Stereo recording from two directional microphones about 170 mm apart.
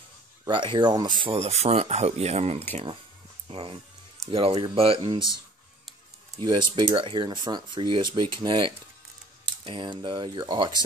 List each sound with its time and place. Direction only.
0.5 s speech: 30° right (ahead or behind)
6.3 s speech: 25° right (ahead or behind)